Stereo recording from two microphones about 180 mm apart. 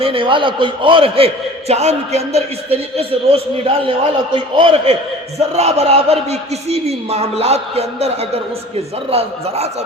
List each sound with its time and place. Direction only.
0.0 s a man's voice: 30° right (ahead or behind)